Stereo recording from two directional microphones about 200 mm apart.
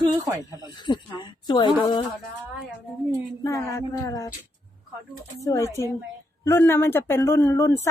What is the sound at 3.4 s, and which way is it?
Speech, 15° left (ahead or behind).